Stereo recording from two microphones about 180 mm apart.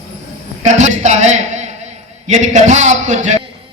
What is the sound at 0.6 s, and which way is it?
A man's voice, 40° right (ahead or behind).